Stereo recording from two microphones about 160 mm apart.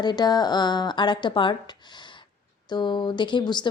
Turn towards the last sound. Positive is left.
turn(degrees=30)  # may be behind; listen again after turning